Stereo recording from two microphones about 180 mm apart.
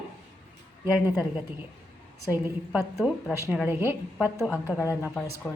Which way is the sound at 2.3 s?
10° right (ahead or behind).